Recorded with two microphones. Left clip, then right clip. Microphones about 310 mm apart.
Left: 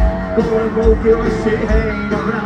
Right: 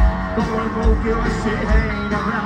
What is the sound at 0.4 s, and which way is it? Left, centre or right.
Music, right.